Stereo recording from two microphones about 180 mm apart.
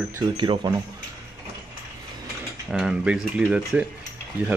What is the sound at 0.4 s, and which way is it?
Speech, 25° right (ahead or behind).